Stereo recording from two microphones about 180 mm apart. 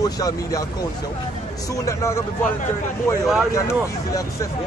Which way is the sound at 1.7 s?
15° left (ahead or behind).